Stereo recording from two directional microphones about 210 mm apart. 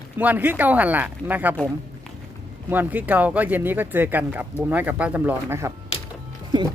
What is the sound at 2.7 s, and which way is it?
Speech, 10° right (ahead or behind).